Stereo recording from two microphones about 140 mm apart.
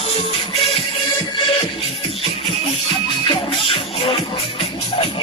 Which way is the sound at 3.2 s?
40° left (ahead or behind).